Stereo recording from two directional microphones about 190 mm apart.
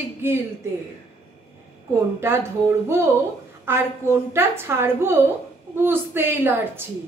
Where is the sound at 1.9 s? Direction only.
10° right (ahead or behind).